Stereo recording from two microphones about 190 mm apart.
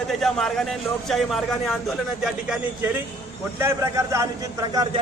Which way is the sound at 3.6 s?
15° right (ahead or behind).